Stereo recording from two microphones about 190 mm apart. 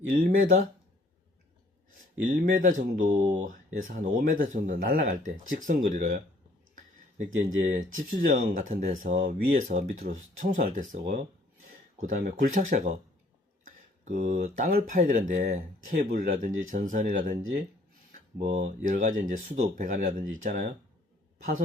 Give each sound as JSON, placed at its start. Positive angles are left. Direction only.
{"t": 0.1, "sound": "speech", "side_deg": -50}
{"t": 2.2, "sound": "speech", "side_deg": -45}
{"t": 7.3, "sound": "speech", "side_deg": -35}